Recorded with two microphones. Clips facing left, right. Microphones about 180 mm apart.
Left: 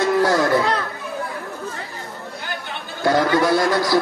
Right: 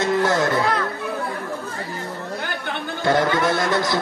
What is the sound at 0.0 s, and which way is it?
Music, 25° right (ahead or behind).